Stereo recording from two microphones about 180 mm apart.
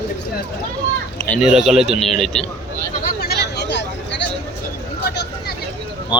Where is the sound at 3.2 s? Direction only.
65° left (ahead or behind).